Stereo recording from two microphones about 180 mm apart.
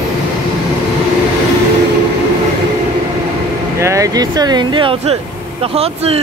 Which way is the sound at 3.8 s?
15° right (ahead or behind).